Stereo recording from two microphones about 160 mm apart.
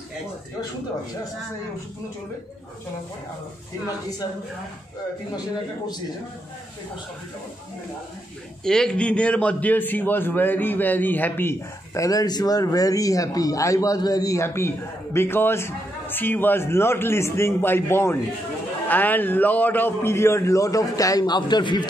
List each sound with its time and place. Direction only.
8.6 s a man's voice: 5° left (ahead or behind); by 21.8 s 25° left (ahead or behind)